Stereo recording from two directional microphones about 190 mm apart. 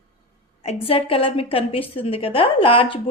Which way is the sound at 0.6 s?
30° left (ahead or behind).